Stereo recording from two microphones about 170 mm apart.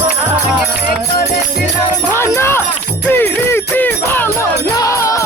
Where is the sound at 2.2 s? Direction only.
15° left (ahead or behind).